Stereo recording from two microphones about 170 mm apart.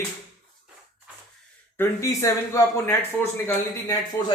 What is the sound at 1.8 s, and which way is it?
A man's voice, 15° left (ahead or behind).